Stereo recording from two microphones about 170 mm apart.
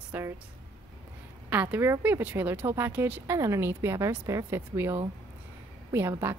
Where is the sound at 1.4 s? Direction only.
10° right (ahead or behind).